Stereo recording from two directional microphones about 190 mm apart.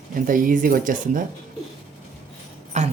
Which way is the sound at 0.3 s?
45° right (ahead or behind).